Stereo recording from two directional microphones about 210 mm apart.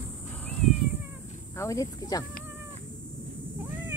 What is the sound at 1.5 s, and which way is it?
Speech, 15° left (ahead or behind).